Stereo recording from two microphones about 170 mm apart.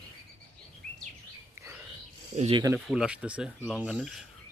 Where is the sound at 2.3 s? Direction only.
40° right (ahead or behind).